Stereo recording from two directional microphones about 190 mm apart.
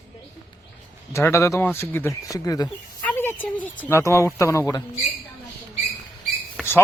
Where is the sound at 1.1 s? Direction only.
15° left (ahead or behind).